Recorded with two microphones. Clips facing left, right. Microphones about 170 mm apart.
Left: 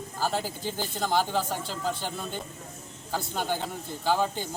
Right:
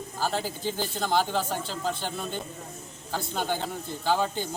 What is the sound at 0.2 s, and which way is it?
A man's voice, 10° left (ahead or behind).